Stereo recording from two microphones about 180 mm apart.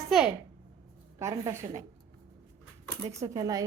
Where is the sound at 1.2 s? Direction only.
15° right (ahead or behind).